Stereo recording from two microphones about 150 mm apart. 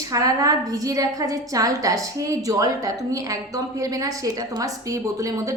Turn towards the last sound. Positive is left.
turn(degrees=-20)  # may be behind; listen again after turning